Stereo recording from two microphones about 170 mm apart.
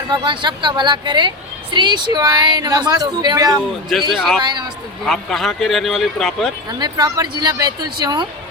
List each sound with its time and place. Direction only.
0.1 s speech: 25° right (ahead or behind)
3.7 s speech: centre (ahead or behind)
4.4 s speech: 25° right (ahead or behind)
5.0 s speech: centre (ahead or behind)
6.7 s speech: 25° right (ahead or behind)